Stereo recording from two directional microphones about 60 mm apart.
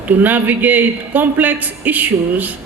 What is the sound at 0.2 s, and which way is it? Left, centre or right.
Speech, right.